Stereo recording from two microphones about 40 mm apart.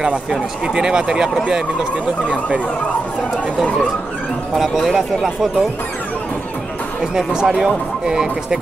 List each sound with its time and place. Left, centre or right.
0.7 s speech: right
4.8 s speech: centre
7.0 s speech: centre